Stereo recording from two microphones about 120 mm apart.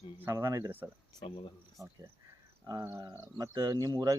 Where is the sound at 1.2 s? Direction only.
45° left (ahead or behind).